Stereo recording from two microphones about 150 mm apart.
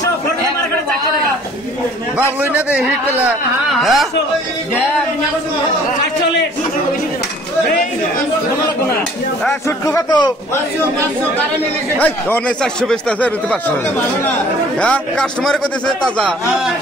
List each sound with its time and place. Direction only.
2.4 s a man's voice: 10° right (ahead or behind)
9.7 s speech: 20° left (ahead or behind)
12.0 s speech: 10° left (ahead or behind)
14.8 s a man's voice: 5° left (ahead or behind)